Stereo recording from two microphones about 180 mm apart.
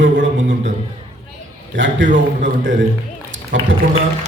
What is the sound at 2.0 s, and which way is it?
Speech, 45° right (ahead or behind).